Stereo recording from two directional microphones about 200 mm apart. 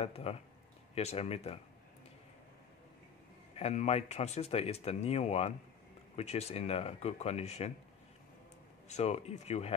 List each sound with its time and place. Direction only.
0.0 s speech: 30° left (ahead or behind)
3.5 s speech: 35° left (ahead or behind)
8.8 s speech: 35° left (ahead or behind)